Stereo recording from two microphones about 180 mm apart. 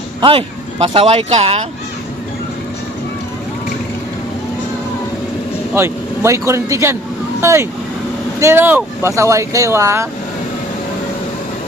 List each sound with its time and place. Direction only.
0.2 s speech: 30° right (ahead or behind)
5.7 s speech: 15° right (ahead or behind)